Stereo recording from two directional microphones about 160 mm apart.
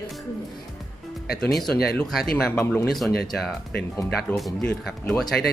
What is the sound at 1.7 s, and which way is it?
Speech, 75° left (ahead or behind).